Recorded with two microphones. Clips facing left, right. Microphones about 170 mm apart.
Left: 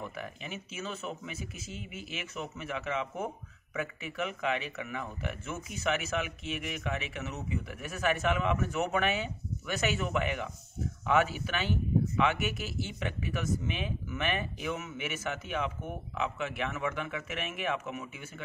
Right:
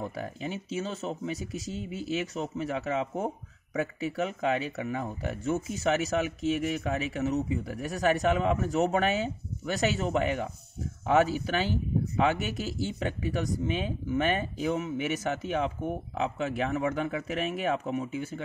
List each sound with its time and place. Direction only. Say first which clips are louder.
0.0 s speech: right 6 dB; 35° right (ahead or behind)